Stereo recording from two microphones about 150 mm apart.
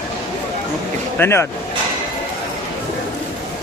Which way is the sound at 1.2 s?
15° left (ahead or behind).